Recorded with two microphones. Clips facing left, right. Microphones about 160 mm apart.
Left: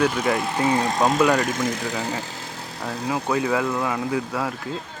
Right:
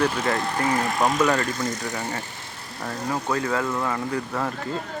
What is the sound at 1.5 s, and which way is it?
Speech, 90° left.